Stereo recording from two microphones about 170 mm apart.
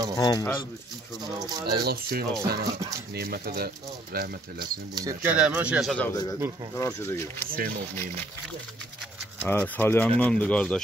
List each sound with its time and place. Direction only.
0.2 s speech: 20° left (ahead or behind)
1.4 s speech: 20° right (ahead or behind)
1.8 s speech: 65° right (ahead or behind)
4.9 s speech: 20° right (ahead or behind)
5.3 s speech: 10° right (ahead or behind); by 7.4 s 15° left (ahead or behind)
7.5 s speech: 60° right (ahead or behind)
9.4 s speech: 10° left (ahead or behind)